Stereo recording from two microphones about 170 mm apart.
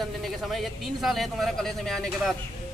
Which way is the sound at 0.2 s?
Centre (ahead or behind).